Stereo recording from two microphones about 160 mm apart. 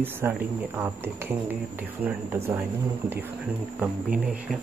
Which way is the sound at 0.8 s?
15° right (ahead or behind).